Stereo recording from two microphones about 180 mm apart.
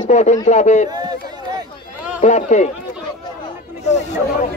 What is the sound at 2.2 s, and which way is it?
Speech, 40° left (ahead or behind).